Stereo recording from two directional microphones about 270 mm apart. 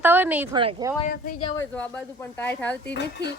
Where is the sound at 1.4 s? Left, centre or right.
Centre.